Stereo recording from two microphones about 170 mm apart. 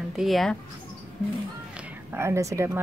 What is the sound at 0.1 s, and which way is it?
Speech, centre (ahead or behind).